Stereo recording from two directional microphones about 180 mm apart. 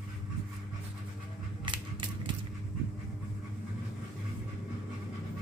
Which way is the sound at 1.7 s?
25° right (ahead or behind).